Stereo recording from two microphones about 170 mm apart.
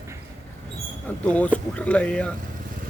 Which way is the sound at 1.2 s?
10° left (ahead or behind).